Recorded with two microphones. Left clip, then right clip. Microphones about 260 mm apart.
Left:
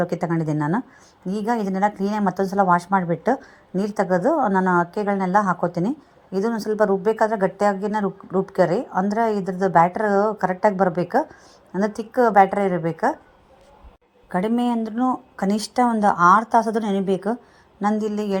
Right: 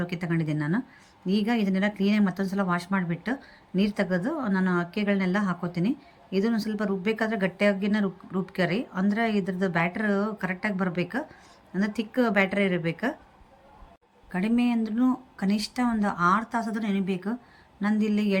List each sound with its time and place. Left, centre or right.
0.0 s speech: centre
14.3 s speech: centre